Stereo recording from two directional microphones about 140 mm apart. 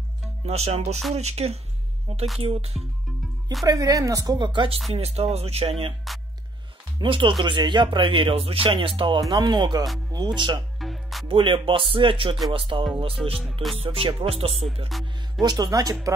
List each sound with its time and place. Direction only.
0.5 s speech: 50° right (ahead or behind)
3.6 s speech: 25° right (ahead or behind)
4.9 s speech: 45° right (ahead or behind)
7.0 s speech: 35° right (ahead or behind)
10.8 s music: centre (ahead or behind)
11.2 s speech: 40° right (ahead or behind)
13.4 s music: centre (ahead or behind)
13.7 s speech: 40° right (ahead or behind)
14.9 s music: centre (ahead or behind)
15.4 s speech: 25° right (ahead or behind)